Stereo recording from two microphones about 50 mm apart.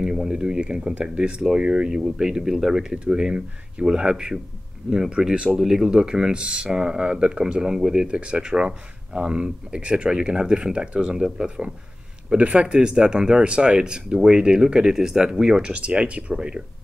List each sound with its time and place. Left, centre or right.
0.0 s speech: centre
5.6 s speech: centre; by 12.7 s right
12.7 s speech: centre